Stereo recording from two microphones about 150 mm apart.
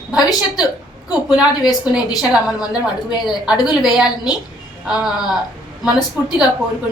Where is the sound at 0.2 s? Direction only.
25° left (ahead or behind).